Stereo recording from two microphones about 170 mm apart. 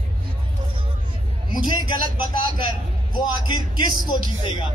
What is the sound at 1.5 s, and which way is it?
A man's voice, 25° left (ahead or behind).